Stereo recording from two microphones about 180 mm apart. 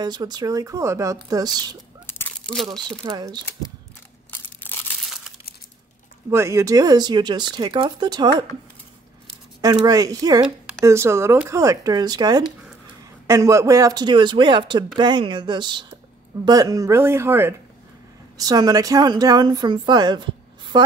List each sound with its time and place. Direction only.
0.0 s speech: 25° right (ahead or behind)
2.0 s crumpling: 10° left (ahead or behind)
3.0 s speech: 25° right (ahead or behind)
4.3 s crushing: 10° left (ahead or behind)
6.3 s speech: 15° right (ahead or behind)
9.8 s speech: 20° right (ahead or behind)